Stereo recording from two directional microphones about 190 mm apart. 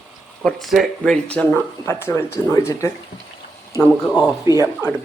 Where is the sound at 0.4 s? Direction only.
Centre (ahead or behind); by 2.9 s 15° left (ahead or behind).